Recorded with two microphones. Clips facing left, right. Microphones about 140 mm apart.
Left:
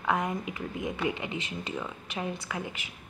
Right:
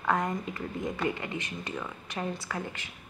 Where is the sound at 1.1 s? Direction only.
20° left (ahead or behind).